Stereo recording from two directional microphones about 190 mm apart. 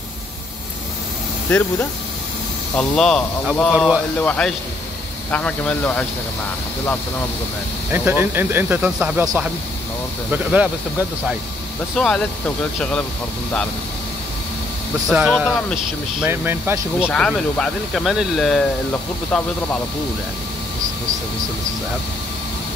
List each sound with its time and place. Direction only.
2.7 s speech: 5° left (ahead or behind)
4.2 s speech: 5° left (ahead or behind)
7.9 s speech: 10° right (ahead or behind)
12.0 s speech: 5° left (ahead or behind)
15.0 s speech: centre (ahead or behind)
16.3 s speech: 10° right (ahead or behind)
17.1 s speech: 5° left (ahead or behind)